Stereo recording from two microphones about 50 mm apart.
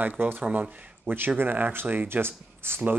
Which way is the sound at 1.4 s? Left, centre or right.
Right.